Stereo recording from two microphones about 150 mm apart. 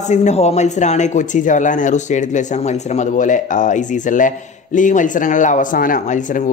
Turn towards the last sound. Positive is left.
turn(degrees=55)  # may be behind; listen again after turning